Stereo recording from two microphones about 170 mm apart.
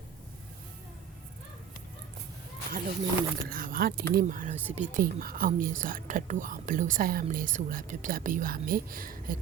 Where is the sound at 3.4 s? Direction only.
55° right (ahead or behind).